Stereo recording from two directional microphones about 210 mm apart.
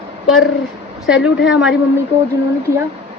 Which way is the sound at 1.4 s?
5° right (ahead or behind).